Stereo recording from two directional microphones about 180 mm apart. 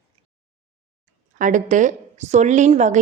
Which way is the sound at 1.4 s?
45° right (ahead or behind).